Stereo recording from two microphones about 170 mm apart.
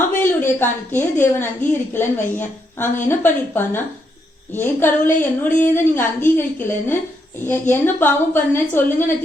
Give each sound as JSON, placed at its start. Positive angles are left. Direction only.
{"t": 0.2, "sound": "a woman's voice", "side_deg": 15}